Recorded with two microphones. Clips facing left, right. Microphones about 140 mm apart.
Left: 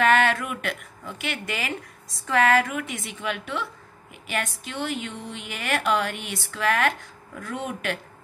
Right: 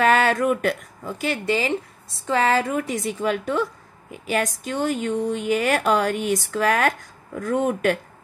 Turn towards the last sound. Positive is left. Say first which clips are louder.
# right 9 dB
turn(degrees=-45)  # may be behind; listen again after turning